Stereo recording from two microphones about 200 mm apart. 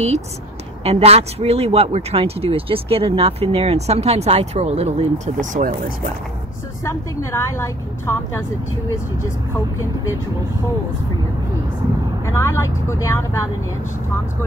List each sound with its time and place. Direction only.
0.8 s speech: 30° right (ahead or behind)
7.2 s a woman's voice: 15° left (ahead or behind)
12.3 s a woman's voice: 15° left (ahead or behind)